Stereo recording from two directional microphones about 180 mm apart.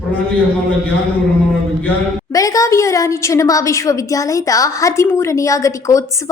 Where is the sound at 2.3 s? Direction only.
20° left (ahead or behind).